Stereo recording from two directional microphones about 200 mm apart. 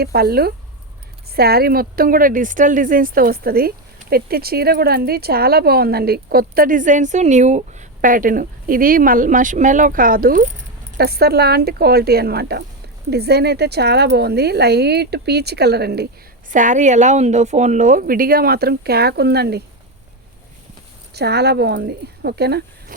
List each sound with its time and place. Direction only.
0.0 s a woman's voice: 50° right (ahead or behind)
16.5 s a woman's voice: 40° right (ahead or behind)
21.1 s speech: 55° right (ahead or behind)